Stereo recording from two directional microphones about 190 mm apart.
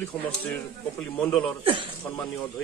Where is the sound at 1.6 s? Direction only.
30° right (ahead or behind).